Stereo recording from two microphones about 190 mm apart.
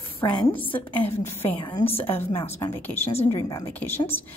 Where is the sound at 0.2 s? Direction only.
25° left (ahead or behind).